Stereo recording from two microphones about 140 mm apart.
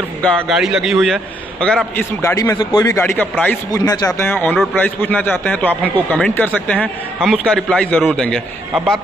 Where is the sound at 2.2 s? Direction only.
25° left (ahead or behind).